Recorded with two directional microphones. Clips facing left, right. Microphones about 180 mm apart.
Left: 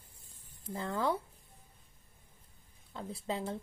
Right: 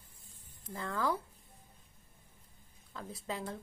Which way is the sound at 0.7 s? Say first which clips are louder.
Left 2 dB; 30° left (ahead or behind).